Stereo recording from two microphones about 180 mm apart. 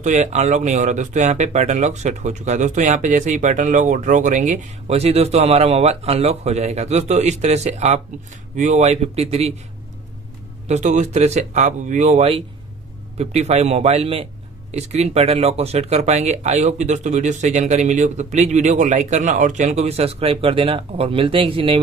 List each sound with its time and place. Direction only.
0.0 s a man's voice: 40° right (ahead or behind)
10.7 s a man's voice: 40° right (ahead or behind)